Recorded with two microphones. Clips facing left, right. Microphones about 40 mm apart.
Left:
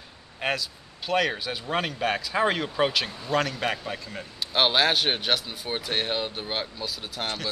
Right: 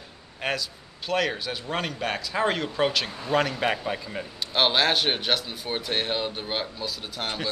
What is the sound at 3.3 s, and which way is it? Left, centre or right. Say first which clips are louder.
Speech: right 2 dB; centre.